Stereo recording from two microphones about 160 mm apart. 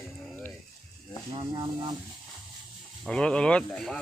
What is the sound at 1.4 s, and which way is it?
Speech, 30° right (ahead or behind).